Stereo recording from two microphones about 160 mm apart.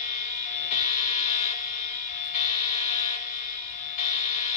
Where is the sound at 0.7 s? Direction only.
50° left (ahead or behind).